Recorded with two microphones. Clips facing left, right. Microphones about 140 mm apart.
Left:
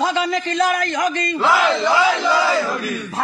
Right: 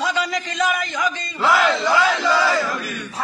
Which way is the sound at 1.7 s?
20° left (ahead or behind).